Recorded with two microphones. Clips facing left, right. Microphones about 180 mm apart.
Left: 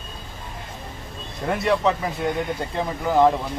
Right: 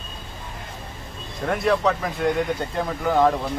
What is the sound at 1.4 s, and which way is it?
Speech, centre (ahead or behind).